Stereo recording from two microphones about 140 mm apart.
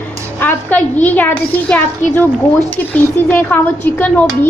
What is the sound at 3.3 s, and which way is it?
Speech, 10° left (ahead or behind).